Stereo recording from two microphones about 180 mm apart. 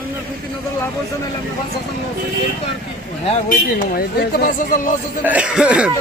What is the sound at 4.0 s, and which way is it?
Speech, 60° left (ahead or behind).